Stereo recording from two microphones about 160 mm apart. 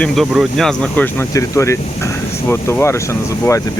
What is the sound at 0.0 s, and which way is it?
Speech, centre (ahead or behind).